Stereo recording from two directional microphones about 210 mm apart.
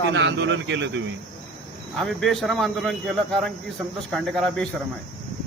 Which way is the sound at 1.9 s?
Centre (ahead or behind).